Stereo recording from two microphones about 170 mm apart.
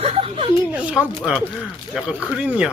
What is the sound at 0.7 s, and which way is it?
Speech, 5° right (ahead or behind).